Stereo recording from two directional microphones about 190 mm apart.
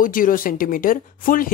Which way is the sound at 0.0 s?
45° left (ahead or behind).